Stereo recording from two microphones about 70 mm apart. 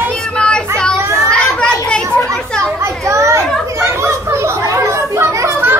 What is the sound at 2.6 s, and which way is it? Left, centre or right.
Children playing, right.